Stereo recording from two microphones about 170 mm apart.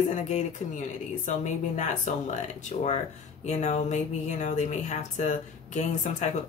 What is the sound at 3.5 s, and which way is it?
Speech, 40° left (ahead or behind).